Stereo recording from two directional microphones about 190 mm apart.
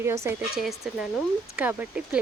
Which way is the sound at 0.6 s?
Centre (ahead or behind).